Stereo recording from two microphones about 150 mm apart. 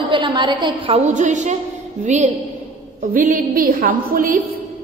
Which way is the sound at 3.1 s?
65° right (ahead or behind).